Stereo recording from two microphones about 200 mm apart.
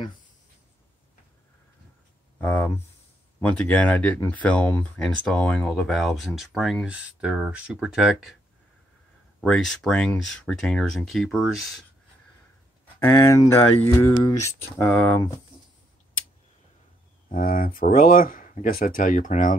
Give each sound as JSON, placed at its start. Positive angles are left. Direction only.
{"t": 2.4, "sound": "speech", "side_deg": 10}
{"t": 9.4, "sound": "speech", "side_deg": 5}
{"t": 13.0, "sound": "speech", "side_deg": 15}
{"t": 17.3, "sound": "speech", "side_deg": 45}